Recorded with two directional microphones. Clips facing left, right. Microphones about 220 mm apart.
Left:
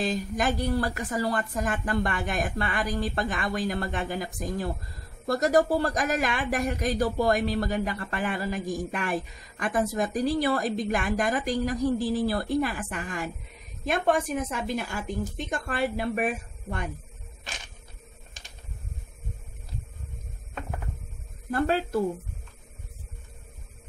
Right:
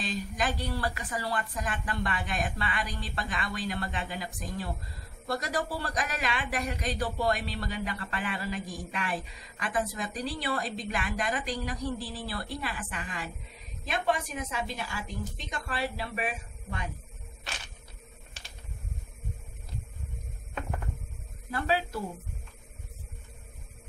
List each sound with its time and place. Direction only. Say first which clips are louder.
0.0 s speech: left 5 dB; 45° left (ahead or behind)
21.5 s speech: left 5 dB; 50° left (ahead or behind)